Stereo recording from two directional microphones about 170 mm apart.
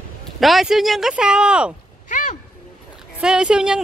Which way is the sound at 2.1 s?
50° left (ahead or behind).